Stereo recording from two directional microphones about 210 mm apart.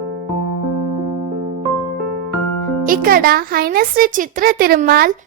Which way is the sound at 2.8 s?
40° right (ahead or behind).